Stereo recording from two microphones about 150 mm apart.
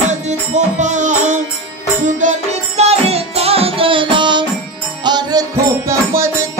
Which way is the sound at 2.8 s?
45° right (ahead or behind).